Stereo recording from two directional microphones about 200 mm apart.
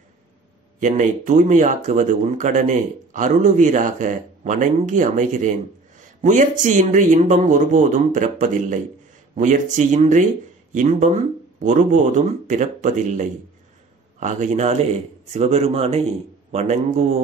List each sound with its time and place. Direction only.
0.7 s speech: 40° right (ahead or behind)